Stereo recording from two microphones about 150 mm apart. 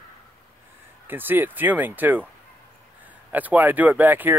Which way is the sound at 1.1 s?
15° right (ahead or behind).